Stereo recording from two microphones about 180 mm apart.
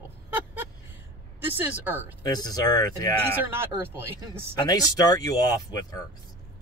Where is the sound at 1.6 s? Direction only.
10° right (ahead or behind).